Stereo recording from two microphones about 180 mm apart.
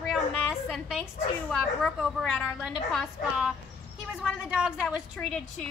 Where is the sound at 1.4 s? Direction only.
Centre (ahead or behind).